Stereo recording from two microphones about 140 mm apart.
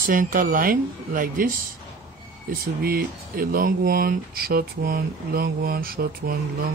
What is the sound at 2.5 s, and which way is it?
Speech, 90° right.